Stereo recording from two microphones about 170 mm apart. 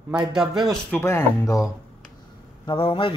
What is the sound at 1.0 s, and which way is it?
Speech, 15° left (ahead or behind).